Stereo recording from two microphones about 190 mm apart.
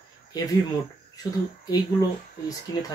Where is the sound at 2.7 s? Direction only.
20° left (ahead or behind).